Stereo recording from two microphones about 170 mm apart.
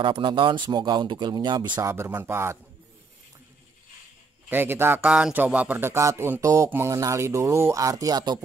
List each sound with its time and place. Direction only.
0.0 s speech: 30° right (ahead or behind)
4.5 s speech: 10° right (ahead or behind)